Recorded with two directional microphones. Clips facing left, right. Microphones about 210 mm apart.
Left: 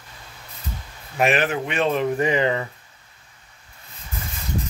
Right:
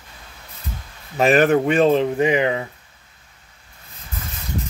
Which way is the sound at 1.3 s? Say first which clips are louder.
Right 8 dB; 50° right (ahead or behind).